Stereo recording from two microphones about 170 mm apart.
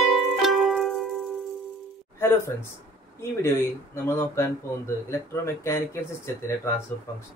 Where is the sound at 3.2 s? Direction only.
15° left (ahead or behind).